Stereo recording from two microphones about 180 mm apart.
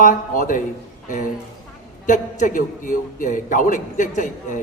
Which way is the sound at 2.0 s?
45° left (ahead or behind).